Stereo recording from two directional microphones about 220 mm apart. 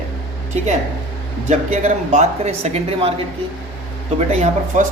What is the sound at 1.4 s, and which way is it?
Speech, 35° right (ahead or behind).